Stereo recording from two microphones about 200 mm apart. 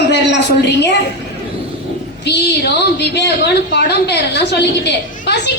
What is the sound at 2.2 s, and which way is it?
A woman's voice, 55° left (ahead or behind).